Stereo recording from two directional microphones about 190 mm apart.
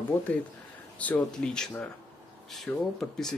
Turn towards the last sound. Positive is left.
turn(degrees=0)  # may be behind; listen again after turning